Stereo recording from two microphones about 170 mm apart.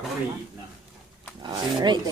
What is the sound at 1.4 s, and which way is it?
Speech, 25° right (ahead or behind).